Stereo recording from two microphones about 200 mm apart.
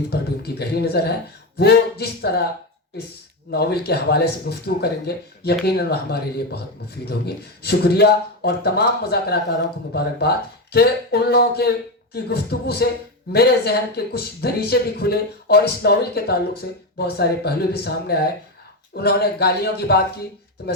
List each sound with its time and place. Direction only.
0.1 s speech: 55° left (ahead or behind)
3.5 s speech: 55° left (ahead or behind)